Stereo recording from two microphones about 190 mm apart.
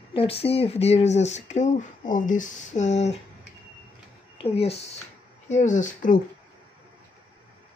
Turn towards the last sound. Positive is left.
turn(degrees=40)  # may be behind; listen again after turning